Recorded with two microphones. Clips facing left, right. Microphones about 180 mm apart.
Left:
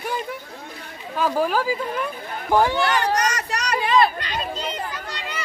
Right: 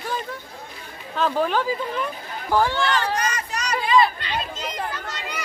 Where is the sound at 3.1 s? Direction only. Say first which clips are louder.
Left 3 dB; 75° left (ahead or behind).